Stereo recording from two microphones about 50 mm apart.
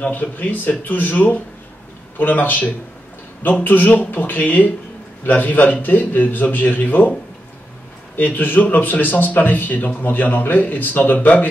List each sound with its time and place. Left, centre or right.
0.0 s a man's voice: left
8.2 s a man's voice: left